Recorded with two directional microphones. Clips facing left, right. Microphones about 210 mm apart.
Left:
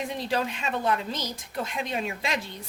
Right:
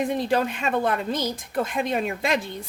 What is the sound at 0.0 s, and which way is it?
A woman's voice, 50° right (ahead or behind).